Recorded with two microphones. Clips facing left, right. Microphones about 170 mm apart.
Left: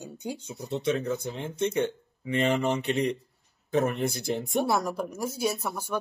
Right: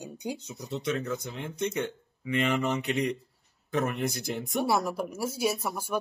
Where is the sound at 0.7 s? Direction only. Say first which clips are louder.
Left 3 dB; 30° left (ahead or behind).